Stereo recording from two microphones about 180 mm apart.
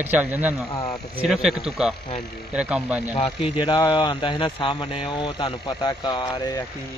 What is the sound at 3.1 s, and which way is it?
Speech, 30° left (ahead or behind).